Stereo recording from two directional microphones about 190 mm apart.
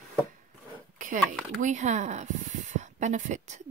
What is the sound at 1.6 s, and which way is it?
Speech, 40° right (ahead or behind).